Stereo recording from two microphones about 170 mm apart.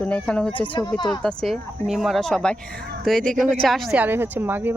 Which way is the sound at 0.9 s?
25° left (ahead or behind).